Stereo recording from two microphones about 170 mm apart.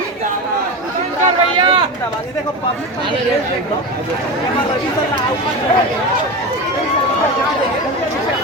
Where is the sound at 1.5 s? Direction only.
30° right (ahead or behind).